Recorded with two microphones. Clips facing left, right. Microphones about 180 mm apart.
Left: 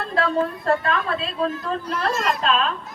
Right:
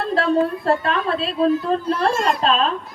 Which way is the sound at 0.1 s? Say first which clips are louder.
Right 4 dB; 30° right (ahead or behind).